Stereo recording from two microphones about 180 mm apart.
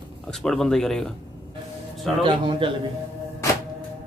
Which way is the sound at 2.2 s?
30° right (ahead or behind).